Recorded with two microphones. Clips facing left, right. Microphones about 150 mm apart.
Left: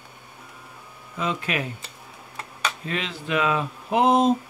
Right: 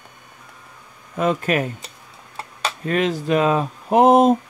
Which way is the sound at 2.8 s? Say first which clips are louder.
Right 10 dB; 50° right (ahead or behind).